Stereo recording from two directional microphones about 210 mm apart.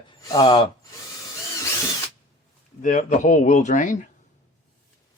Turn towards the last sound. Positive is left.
turn(degrees=35)  # may be behind; listen again after turning